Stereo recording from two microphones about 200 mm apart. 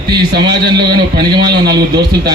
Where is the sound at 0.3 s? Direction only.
55° right (ahead or behind).